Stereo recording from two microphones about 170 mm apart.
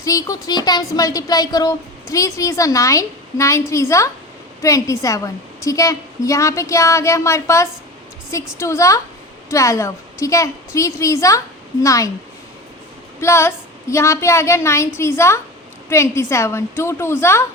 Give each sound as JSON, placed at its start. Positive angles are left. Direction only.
{"t": 0.0, "sound": "a woman's voice", "side_deg": 20}
{"t": 13.1, "sound": "a woman's voice", "side_deg": 15}